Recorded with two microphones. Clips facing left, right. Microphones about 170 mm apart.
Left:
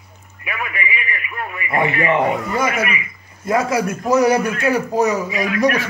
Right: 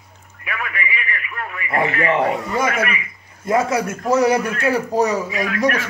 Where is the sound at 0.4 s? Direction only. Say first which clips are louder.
Left 1 dB; 15° left (ahead or behind).